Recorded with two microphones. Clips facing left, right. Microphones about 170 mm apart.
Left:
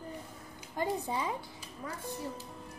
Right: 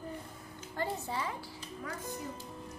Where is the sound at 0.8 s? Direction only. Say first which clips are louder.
Left 3 dB; 15° left (ahead or behind).